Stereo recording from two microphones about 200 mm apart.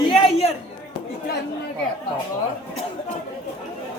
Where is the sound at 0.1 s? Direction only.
30° left (ahead or behind).